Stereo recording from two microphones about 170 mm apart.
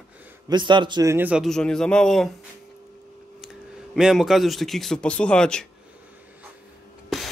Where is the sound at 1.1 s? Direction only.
10° right (ahead or behind).